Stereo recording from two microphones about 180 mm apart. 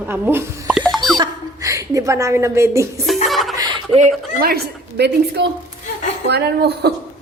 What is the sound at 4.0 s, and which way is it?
A woman's voice, 50° right (ahead or behind).